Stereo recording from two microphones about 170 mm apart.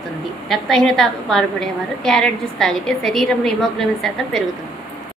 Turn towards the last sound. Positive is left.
turn(degrees=0)  # may be behind; listen again after turning